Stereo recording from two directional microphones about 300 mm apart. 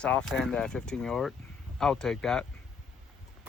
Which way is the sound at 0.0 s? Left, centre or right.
Centre.